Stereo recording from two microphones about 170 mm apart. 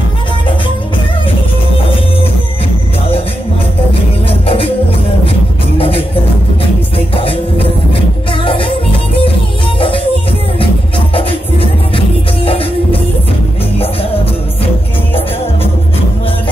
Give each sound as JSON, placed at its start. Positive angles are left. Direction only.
{"t": 4.3, "sound": "music", "side_deg": 35}
{"t": 5.8, "sound": "music", "side_deg": 35}
{"t": 7.2, "sound": "music", "side_deg": 35}
{"t": 11.1, "sound": "music", "side_deg": 35}